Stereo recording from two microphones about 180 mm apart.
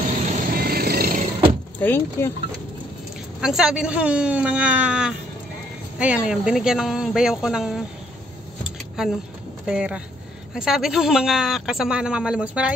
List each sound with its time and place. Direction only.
0.1 s music: 50° right (ahead or behind)
1.8 s speech: 15° left (ahead or behind)
3.3 s speech: 5° right (ahead or behind)
9.0 s speech: 5° right (ahead or behind)